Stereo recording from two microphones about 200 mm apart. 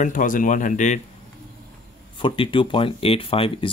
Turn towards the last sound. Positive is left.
turn(degrees=25)  # may be behind; listen again after turning